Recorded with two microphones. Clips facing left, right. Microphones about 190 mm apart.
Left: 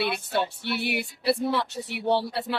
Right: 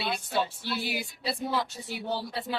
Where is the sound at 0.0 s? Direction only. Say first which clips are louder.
Left 3 dB; 65° left (ahead or behind).